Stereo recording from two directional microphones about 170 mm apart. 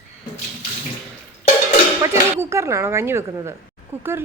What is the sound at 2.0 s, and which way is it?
A woman's voice, 15° right (ahead or behind).